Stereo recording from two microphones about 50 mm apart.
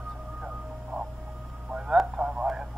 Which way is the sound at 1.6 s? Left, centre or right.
Centre.